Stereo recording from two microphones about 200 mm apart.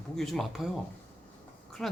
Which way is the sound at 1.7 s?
Centre (ahead or behind).